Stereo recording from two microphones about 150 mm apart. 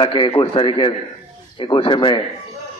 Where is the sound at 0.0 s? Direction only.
30° left (ahead or behind).